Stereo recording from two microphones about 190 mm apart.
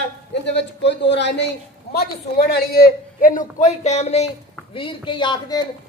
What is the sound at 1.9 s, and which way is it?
A man's voice, 55° left (ahead or behind).